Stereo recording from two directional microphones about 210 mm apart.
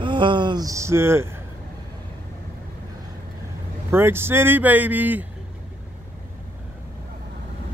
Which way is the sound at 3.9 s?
10° right (ahead or behind).